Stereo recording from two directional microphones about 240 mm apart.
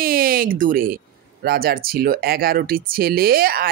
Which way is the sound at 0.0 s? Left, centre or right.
Right.